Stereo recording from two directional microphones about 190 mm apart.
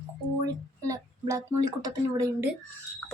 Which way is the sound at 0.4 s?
20° right (ahead or behind).